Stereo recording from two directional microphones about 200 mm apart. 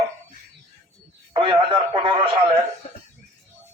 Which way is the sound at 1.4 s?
25° right (ahead or behind).